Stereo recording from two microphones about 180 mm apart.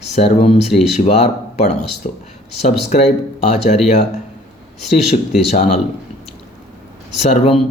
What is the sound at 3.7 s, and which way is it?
Mantra, 40° left (ahead or behind).